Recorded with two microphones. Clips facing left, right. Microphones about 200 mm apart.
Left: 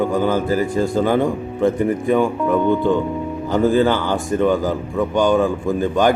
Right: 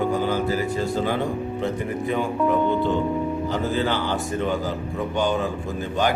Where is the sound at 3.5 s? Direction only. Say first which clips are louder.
Left 11 dB; 50° left (ahead or behind).